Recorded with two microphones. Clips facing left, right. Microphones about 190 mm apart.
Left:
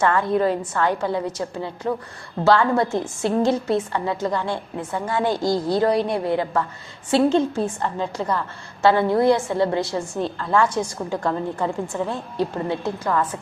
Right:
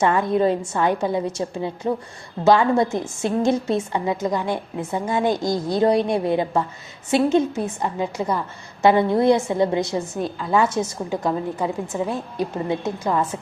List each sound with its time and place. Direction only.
0.0 s a woman's voice: 20° right (ahead or behind)
10.7 s a woman's voice: 25° right (ahead or behind)